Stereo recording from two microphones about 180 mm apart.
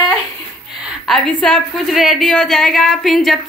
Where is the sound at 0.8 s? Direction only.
Centre (ahead or behind).